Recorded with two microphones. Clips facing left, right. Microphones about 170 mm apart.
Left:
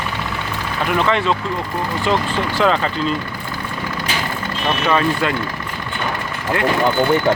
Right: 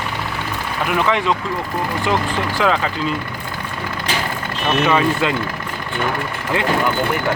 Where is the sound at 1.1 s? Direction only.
15° right (ahead or behind).